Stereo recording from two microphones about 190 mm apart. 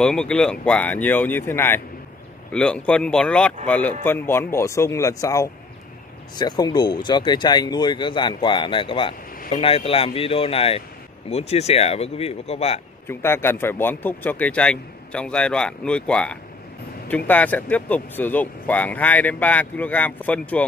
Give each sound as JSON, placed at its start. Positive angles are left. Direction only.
{"t": 0.0, "sound": "speech", "side_deg": 5}
{"t": 13.0, "sound": "speech", "side_deg": 10}